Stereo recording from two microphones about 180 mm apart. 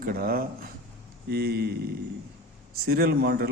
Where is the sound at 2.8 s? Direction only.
60° right (ahead or behind).